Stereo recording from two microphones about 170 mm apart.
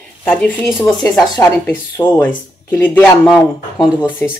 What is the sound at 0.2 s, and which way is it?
A man's voice, 10° left (ahead or behind).